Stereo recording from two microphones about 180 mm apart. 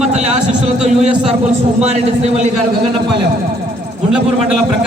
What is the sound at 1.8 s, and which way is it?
Speech, 35° right (ahead or behind).